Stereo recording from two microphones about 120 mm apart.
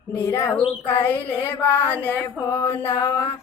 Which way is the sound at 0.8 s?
15° left (ahead or behind).